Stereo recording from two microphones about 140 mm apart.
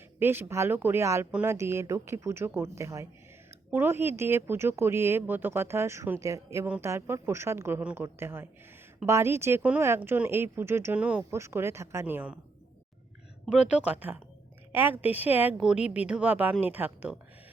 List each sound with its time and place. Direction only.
0.2 s speech: 15° right (ahead or behind)
13.5 s a woman's voice: 10° right (ahead or behind)